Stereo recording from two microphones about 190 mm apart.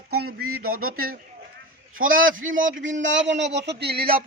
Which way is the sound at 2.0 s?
50° right (ahead or behind).